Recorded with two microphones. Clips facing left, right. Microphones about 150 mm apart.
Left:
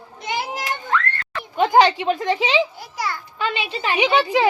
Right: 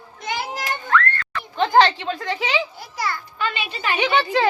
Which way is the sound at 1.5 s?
10° left (ahead or behind).